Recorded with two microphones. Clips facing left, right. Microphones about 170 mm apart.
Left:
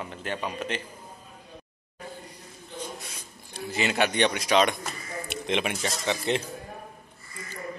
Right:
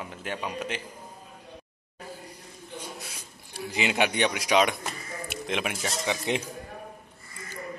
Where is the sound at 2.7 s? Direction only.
10° right (ahead or behind).